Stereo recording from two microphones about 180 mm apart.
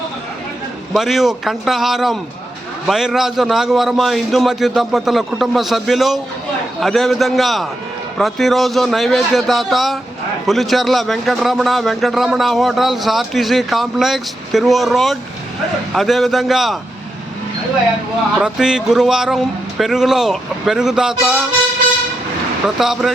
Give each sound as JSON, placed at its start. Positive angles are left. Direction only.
{"t": 0.9, "sound": "a man's voice", "side_deg": 0}
{"t": 18.3, "sound": "a man's voice", "side_deg": -5}
{"t": 22.8, "sound": "a man's voice", "side_deg": 0}